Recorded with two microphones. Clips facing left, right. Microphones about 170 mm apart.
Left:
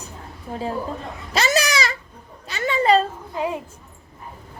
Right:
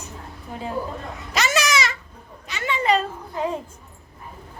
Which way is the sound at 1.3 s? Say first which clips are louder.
Left 2 dB; 30° left (ahead or behind).